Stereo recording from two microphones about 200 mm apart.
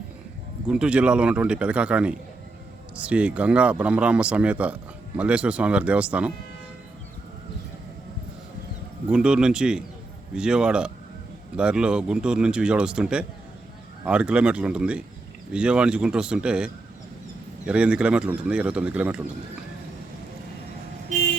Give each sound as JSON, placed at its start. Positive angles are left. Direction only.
{"t": 0.7, "sound": "speech", "side_deg": -5}
{"t": 9.0, "sound": "speech", "side_deg": -5}